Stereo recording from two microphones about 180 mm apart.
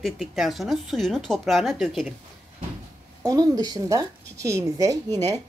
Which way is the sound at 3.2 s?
20° right (ahead or behind).